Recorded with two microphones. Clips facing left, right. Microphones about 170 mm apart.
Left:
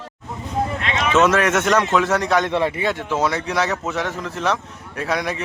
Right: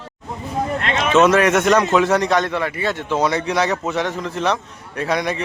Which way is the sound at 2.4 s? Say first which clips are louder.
Left 2 dB; 25° left (ahead or behind).